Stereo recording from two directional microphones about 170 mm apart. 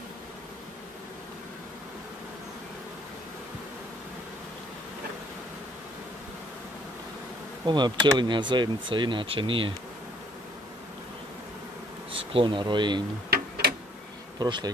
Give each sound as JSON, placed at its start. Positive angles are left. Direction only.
{"t": 7.6, "sound": "speech", "side_deg": -25}
{"t": 12.1, "sound": "speech", "side_deg": -30}
{"t": 13.3, "sound": "tick-tock", "side_deg": -65}
{"t": 14.4, "sound": "speech", "side_deg": -25}